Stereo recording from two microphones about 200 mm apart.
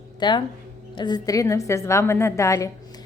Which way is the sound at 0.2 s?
20° left (ahead or behind).